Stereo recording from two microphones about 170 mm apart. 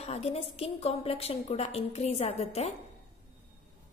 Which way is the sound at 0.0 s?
35° left (ahead or behind).